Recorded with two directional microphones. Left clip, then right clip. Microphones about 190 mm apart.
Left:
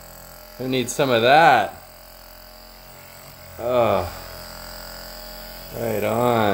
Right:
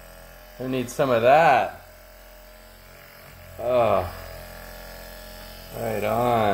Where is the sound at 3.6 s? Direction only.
30° left (ahead or behind).